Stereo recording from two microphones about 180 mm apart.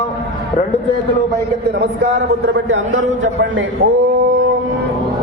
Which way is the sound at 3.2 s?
90° right.